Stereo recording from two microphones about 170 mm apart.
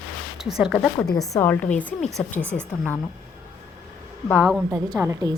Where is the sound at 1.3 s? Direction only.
15° left (ahead or behind).